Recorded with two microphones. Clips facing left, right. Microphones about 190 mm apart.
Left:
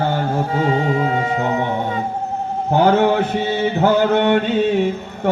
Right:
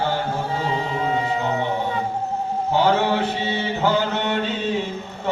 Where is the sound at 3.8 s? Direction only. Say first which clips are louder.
Left 7 dB; 55° left (ahead or behind).